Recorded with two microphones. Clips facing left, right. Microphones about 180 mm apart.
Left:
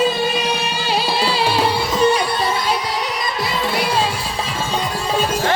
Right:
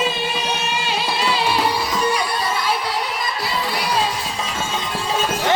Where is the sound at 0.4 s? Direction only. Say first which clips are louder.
Left 2 dB; 35° left (ahead or behind).